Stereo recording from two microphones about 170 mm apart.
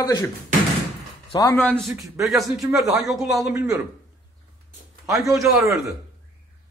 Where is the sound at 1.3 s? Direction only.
20° left (ahead or behind).